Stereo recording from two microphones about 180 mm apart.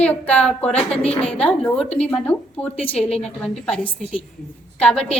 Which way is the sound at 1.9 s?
5° left (ahead or behind).